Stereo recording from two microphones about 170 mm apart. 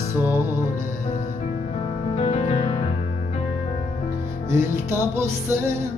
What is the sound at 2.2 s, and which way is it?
Music, 40° left (ahead or behind).